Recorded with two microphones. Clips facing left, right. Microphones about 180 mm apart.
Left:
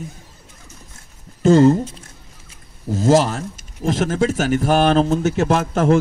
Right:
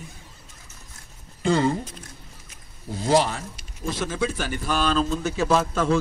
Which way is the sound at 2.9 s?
45° left (ahead or behind).